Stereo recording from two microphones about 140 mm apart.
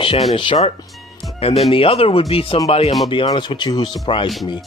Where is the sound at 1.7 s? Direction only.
40° left (ahead or behind).